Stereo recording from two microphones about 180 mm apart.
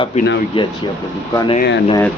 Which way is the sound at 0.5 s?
30° left (ahead or behind).